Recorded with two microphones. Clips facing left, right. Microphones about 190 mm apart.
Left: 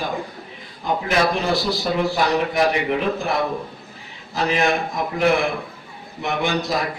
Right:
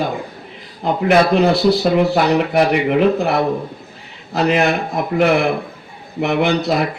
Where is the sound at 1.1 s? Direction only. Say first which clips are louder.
Right 8 dB; 65° right (ahead or behind).